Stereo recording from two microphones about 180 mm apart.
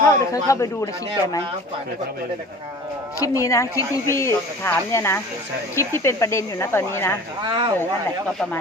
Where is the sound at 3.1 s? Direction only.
15° left (ahead or behind).